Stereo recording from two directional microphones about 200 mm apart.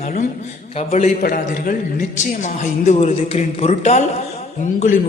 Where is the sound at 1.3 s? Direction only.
45° left (ahead or behind).